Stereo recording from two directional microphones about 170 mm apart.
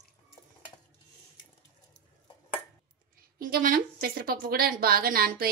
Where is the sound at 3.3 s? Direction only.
55° right (ahead or behind).